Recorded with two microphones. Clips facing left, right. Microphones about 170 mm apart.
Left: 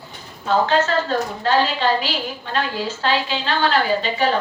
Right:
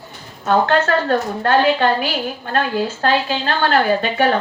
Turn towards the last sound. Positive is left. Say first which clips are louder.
# right 3 dB
turn(degrees=-60)  # may be behind; listen again after turning